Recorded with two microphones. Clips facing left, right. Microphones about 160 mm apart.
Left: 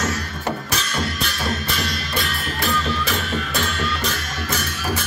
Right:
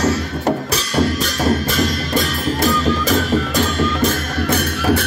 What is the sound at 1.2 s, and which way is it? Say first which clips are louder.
Music: right 8 dB; 45° right (ahead or behind).